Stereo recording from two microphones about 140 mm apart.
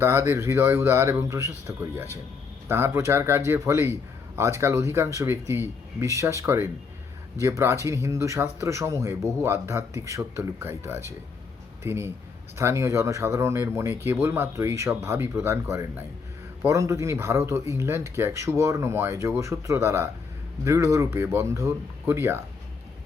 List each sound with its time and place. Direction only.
0.0 s speech: 20° right (ahead or behind)